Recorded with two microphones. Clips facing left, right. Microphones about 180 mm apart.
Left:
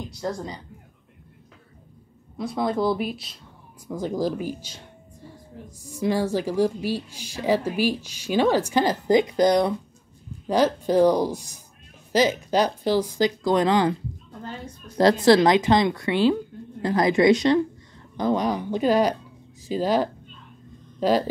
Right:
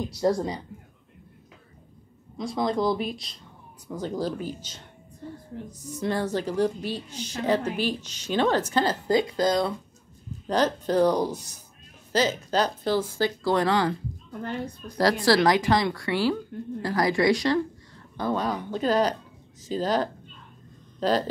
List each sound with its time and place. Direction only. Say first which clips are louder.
0.2 s a woman's voice: right 6 dB; 30° right (ahead or behind)
2.3 s a woman's voice: left 1 dB; 5° left (ahead or behind)
15.0 s a woman's voice: left 5 dB; 20° left (ahead or behind)